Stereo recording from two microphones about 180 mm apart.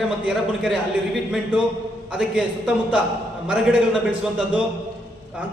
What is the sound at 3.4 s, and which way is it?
Speech, 5° right (ahead or behind).